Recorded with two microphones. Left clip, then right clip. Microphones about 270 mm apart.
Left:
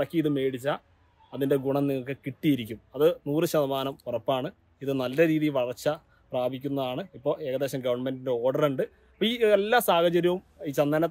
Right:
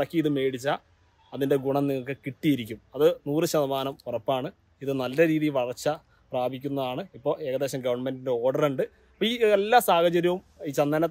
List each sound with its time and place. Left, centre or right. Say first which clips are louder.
0.0 s a man's voice: right 1 dB; centre